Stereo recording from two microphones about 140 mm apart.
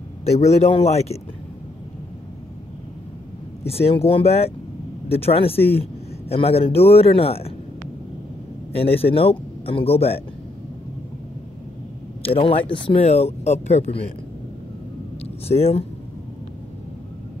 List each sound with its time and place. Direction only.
0.2 s speech: 50° left (ahead or behind)
3.6 s speech: 45° left (ahead or behind)
8.7 s speech: 45° left (ahead or behind)
12.2 s speech: 40° left (ahead or behind)
13.0 s speech: 50° left (ahead or behind)
15.4 s speech: 50° left (ahead or behind)